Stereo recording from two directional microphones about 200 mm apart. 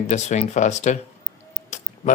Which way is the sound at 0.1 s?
35° left (ahead or behind).